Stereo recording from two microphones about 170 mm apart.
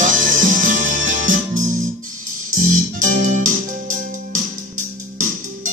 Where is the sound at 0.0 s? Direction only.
50° right (ahead or behind).